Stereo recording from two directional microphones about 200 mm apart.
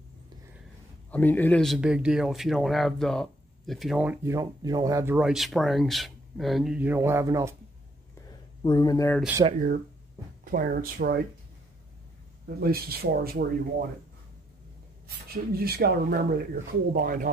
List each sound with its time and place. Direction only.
1.1 s speech: 10° left (ahead or behind); by 7.5 s 15° right (ahead or behind)
8.6 s speech: 20° left (ahead or behind)
9.4 s speech: 30° right (ahead or behind)
10.4 s speech: 45° right (ahead or behind)
12.4 s speech: 50° right (ahead or behind)
15.2 s speech: 50° right (ahead or behind)